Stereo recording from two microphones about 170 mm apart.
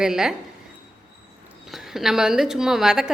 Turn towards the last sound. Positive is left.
turn(degrees=-5)  # may be behind; listen again after turning